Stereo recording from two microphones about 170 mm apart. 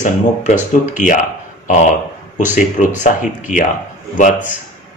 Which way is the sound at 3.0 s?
50° left (ahead or behind).